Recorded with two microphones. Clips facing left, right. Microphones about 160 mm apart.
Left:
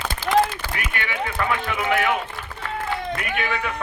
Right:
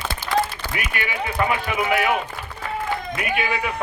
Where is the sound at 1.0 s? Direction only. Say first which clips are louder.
Right 3 dB; 15° right (ahead or behind).